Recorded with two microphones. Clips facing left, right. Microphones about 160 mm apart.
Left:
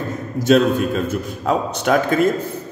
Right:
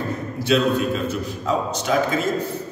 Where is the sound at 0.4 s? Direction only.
45° left (ahead or behind).